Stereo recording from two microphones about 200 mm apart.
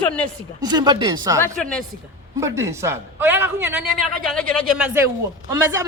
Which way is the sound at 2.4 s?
15° right (ahead or behind).